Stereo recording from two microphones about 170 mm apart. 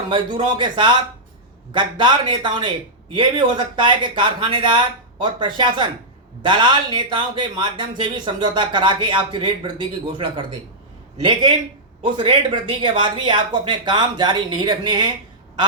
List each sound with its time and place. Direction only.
0.1 s speech: 30° right (ahead or behind)
11.2 s speech: 30° right (ahead or behind)